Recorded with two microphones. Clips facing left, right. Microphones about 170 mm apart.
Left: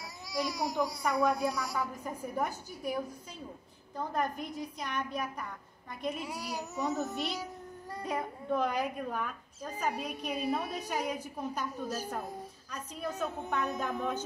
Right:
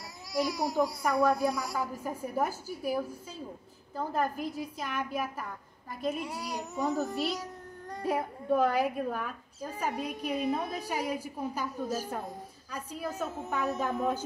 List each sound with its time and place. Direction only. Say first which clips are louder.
0.3 s a child's voice: right 3 dB; centre (ahead or behind)
13.4 s a child's voice: right 4 dB; 5° right (ahead or behind)